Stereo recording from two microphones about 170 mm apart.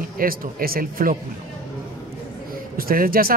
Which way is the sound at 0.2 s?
60° right (ahead or behind).